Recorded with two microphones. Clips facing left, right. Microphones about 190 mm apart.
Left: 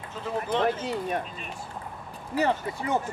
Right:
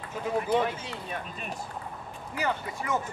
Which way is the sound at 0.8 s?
45° left (ahead or behind).